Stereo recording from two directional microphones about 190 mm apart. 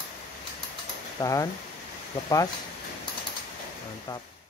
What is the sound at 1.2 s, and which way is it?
Speech, 20° left (ahead or behind).